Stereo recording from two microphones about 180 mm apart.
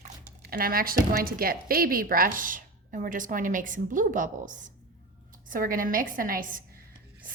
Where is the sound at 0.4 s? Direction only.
55° right (ahead or behind).